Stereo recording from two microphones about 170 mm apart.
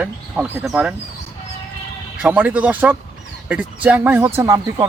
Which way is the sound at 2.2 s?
5° right (ahead or behind).